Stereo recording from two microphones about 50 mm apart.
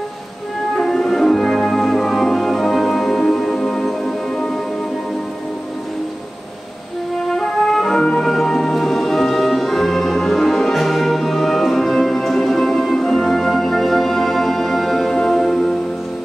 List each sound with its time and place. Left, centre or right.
0.7 s music: centre
7.2 s music: centre